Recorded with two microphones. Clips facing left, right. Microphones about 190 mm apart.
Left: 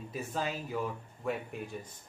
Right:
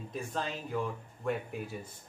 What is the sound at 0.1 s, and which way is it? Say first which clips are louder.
Speech: left 1 dB; 5° left (ahead or behind).